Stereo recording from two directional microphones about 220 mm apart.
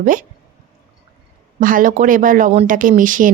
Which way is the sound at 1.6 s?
40° right (ahead or behind).